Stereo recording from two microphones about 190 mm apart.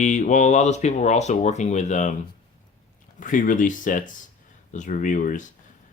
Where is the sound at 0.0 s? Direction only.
40° left (ahead or behind).